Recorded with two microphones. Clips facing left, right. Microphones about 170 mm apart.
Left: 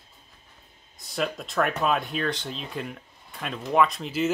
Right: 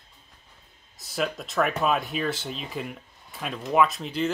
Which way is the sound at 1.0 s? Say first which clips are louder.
Even; centre (ahead or behind).